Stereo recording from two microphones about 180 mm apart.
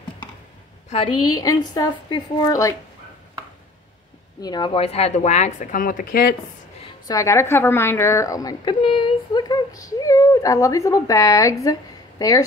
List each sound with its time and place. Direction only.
0.8 s a woman's voice: 30° left (ahead or behind)
4.4 s speech: 25° left (ahead or behind); by 6.3 s 50° left (ahead or behind)
7.1 s a woman's voice: 15° left (ahead or behind)